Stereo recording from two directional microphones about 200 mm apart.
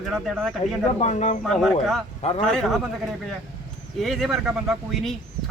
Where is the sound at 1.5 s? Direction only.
Centre (ahead or behind).